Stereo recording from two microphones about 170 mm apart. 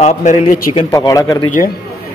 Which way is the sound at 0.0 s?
45° left (ahead or behind).